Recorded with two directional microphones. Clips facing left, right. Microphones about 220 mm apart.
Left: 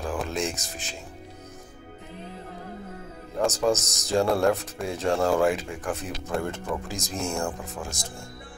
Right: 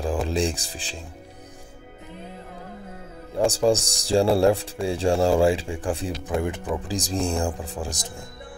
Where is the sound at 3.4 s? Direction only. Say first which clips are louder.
Right 4 dB; 30° right (ahead or behind).